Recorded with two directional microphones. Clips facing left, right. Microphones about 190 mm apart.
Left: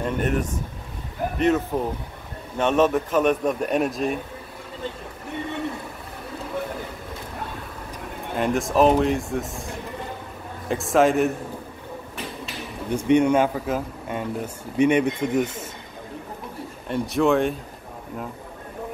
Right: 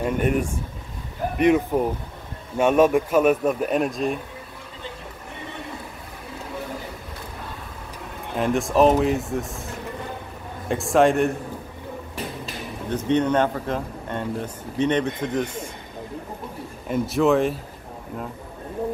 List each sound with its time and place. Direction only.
0.0 s a man's voice: 10° right (ahead or behind)
8.4 s a man's voice: centre (ahead or behind)
10.7 s a man's voice: centre (ahead or behind)
12.9 s speech: 10° left (ahead or behind)
16.8 s a man's voice: 5° right (ahead or behind)